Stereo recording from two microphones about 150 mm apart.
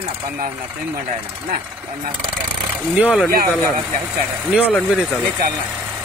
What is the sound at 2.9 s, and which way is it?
Speech, 5° right (ahead or behind).